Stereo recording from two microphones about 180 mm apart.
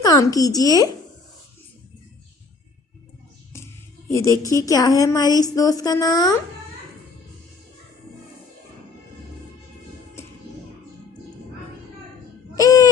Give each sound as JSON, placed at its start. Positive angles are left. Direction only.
{"t": 0.0, "sound": "speech", "side_deg": 20}
{"t": 4.1, "sound": "speech", "side_deg": 15}
{"t": 12.5, "sound": "owl", "side_deg": 20}